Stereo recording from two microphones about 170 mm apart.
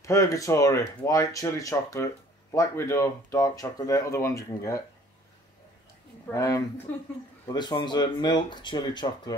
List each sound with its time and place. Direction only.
0.0 s speech: 20° left (ahead or behind)
6.3 s speech: 20° left (ahead or behind)